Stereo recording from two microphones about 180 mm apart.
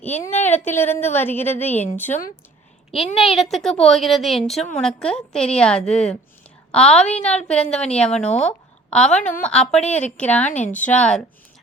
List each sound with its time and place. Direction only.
0.0 s a woman's voice: 10° left (ahead or behind)
3.2 s a child's voice: centre (ahead or behind)
8.3 s speech: 40° left (ahead or behind)
8.9 s a woman's voice: 5° left (ahead or behind)
9.1 s speech: 40° left (ahead or behind)
9.7 s a child's voice: 5° left (ahead or behind)
10.6 s speech: 45° left (ahead or behind)
10.8 s a child's voice: 5° left (ahead or behind)